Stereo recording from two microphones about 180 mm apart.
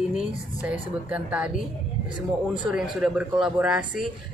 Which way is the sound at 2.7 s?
5° right (ahead or behind).